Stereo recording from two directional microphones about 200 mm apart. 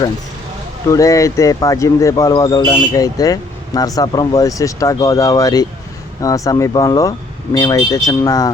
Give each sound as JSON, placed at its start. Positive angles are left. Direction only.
{"t": 0.9, "sound": "speech", "side_deg": 15}